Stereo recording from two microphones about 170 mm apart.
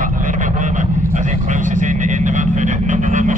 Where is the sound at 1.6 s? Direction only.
50° right (ahead or behind).